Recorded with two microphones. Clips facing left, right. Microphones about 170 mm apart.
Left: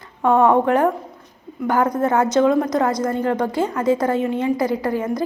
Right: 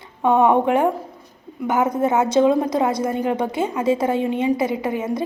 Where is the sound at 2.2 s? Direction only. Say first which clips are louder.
Even; 25° right (ahead or behind).